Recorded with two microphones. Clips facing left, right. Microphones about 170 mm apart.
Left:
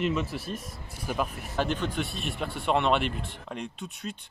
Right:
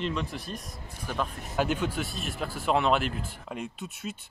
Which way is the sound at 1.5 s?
10° right (ahead or behind).